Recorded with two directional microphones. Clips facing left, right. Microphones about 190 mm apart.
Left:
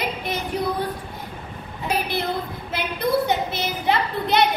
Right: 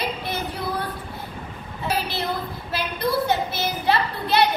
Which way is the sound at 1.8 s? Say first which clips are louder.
Left 2 dB; 20° left (ahead or behind).